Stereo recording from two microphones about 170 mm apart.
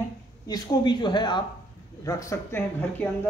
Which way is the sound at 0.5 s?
25° left (ahead or behind).